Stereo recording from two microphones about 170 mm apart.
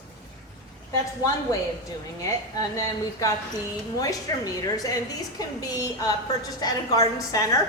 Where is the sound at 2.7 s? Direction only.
20° left (ahead or behind).